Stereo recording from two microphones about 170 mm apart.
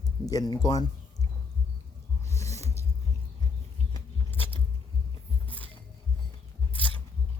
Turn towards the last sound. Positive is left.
turn(degrees=-30)  # may be behind; listen again after turning